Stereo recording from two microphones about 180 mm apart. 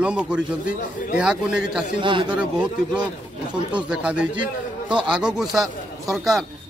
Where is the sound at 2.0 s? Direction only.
25° right (ahead or behind).